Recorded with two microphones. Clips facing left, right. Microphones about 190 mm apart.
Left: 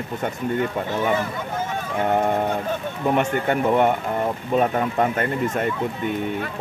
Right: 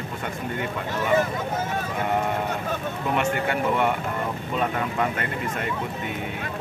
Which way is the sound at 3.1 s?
40° left (ahead or behind).